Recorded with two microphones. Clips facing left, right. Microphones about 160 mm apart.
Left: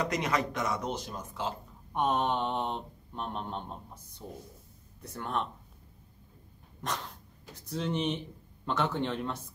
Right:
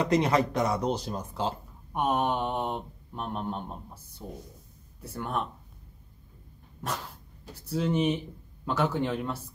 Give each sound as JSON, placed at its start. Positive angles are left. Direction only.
{"t": 0.0, "sound": "speech", "side_deg": -30}
{"t": 2.0, "sound": "speech", "side_deg": -10}
{"t": 7.5, "sound": "speech", "side_deg": -5}